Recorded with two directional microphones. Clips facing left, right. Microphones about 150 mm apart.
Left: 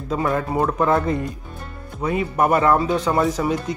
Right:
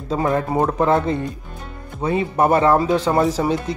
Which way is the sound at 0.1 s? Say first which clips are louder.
Right 2 dB; 30° right (ahead or behind).